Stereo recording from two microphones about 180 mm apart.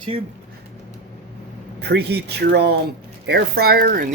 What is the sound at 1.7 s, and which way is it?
A woman's voice, 65° right (ahead or behind).